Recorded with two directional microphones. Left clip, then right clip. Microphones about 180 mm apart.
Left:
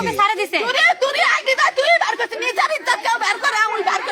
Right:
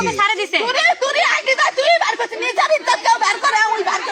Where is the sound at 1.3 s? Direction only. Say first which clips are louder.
Even; 10° right (ahead or behind).